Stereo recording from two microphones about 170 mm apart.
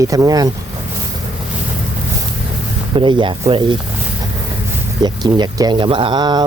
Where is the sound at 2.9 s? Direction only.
30° right (ahead or behind).